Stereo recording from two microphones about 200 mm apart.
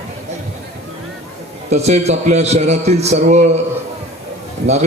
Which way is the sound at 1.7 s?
35° right (ahead or behind).